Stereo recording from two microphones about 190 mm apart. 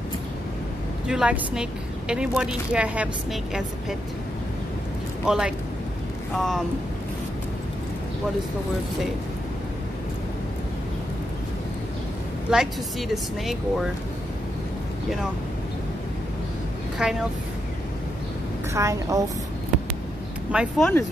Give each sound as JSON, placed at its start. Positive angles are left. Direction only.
{"t": 1.0, "sound": "a woman's voice", "side_deg": -5}
{"t": 5.2, "sound": "a woman's voice", "side_deg": -5}
{"t": 12.5, "sound": "a woman's voice", "side_deg": -5}
{"t": 17.0, "sound": "a woman's voice", "side_deg": -5}
{"t": 18.7, "sound": "a woman's voice", "side_deg": -15}
{"t": 20.5, "sound": "a woman's voice", "side_deg": 0}